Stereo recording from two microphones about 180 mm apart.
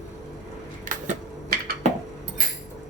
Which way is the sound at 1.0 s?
45° right (ahead or behind).